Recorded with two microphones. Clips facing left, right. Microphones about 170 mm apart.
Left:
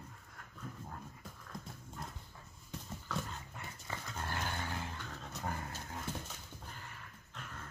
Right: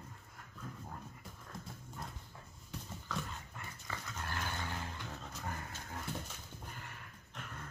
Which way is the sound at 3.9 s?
20° left (ahead or behind).